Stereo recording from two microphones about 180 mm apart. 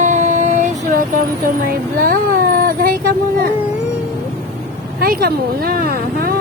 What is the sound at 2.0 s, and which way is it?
Cat, 55° right (ahead or behind).